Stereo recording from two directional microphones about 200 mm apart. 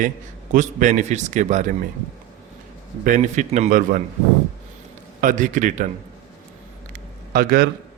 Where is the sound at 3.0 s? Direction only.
40° right (ahead or behind).